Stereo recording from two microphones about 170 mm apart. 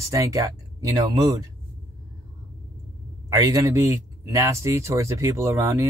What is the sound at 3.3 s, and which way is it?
Speech, 20° right (ahead or behind).